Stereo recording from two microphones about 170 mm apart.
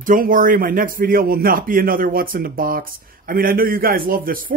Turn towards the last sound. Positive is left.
turn(degrees=-55)  # may be behind; listen again after turning